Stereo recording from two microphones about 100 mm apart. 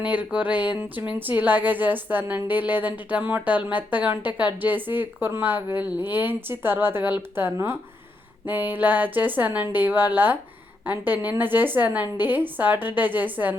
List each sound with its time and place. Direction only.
0.0 s a woman's voice: 15° right (ahead or behind)